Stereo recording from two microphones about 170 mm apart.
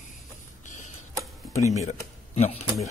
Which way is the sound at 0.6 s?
45° left (ahead or behind).